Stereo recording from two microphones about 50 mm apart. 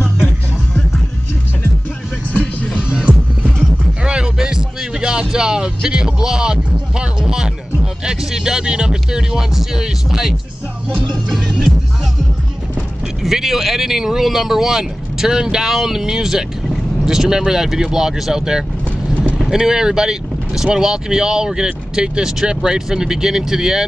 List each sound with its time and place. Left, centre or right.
2.8 s music: centre
4.0 s speech: centre
11.3 s speech: centre
13.2 s speech: centre